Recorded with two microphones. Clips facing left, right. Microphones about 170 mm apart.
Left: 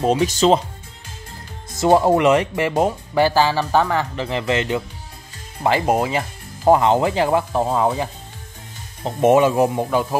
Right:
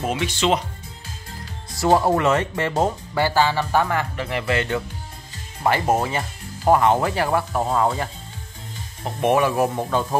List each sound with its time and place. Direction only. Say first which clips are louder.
0.0 s speech: left 6 dB; 35° left (ahead or behind)
1.7 s speech: left 3 dB; 20° left (ahead or behind)